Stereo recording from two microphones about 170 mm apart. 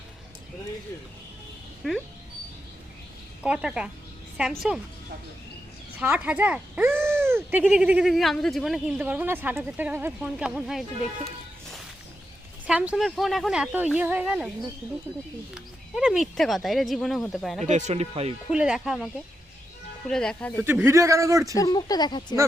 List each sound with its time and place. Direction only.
1.8 s speech: centre (ahead or behind)
3.4 s speech: 5° right (ahead or behind)
6.0 s speech: 10° right (ahead or behind)
12.6 s speech: 5° right (ahead or behind)
15.5 s speech: 5° right (ahead or behind)
17.7 s speech: 45° right (ahead or behind)
18.5 s speech: 5° right (ahead or behind)
20.8 s speech: 15° right (ahead or behind)
21.5 s speech: 20° left (ahead or behind)